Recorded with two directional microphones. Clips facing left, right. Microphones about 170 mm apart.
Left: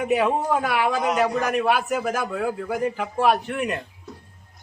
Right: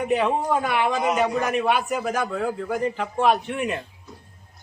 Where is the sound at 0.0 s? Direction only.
5° left (ahead or behind).